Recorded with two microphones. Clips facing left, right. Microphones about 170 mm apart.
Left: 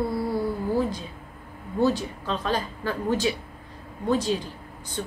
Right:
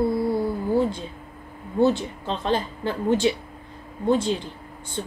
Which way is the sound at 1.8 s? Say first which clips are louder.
Right 3 dB; 25° right (ahead or behind).